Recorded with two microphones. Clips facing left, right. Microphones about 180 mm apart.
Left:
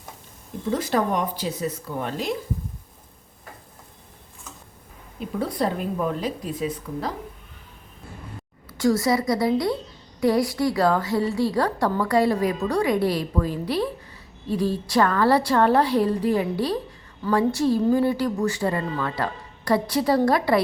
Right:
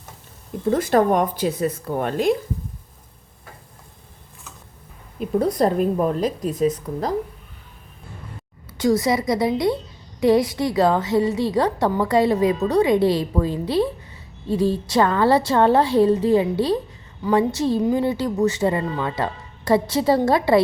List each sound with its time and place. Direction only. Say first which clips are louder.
0.7 s speech: right 6 dB; 50° right (ahead or behind)
5.4 s a woman's voice: right 6 dB; 40° right (ahead or behind)
8.8 s a woman's voice: right 2 dB; 20° right (ahead or behind)